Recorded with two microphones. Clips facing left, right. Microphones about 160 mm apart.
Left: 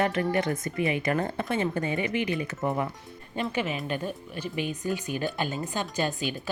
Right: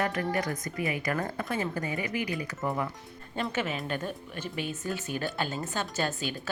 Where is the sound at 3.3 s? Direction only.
10° left (ahead or behind).